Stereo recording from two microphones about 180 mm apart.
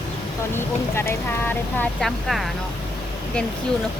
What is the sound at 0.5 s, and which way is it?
Speech, 15° left (ahead or behind).